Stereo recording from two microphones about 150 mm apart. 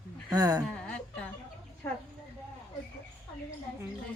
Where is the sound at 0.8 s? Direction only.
5° left (ahead or behind).